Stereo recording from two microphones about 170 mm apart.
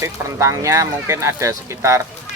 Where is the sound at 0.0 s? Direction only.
15° right (ahead or behind).